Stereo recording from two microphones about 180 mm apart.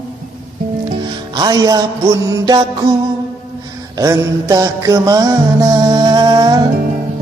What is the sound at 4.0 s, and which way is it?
Music, 20° right (ahead or behind).